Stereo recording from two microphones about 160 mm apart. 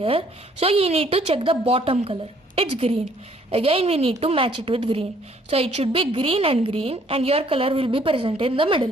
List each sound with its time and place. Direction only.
0.0 s a woman's voice: 35° right (ahead or behind)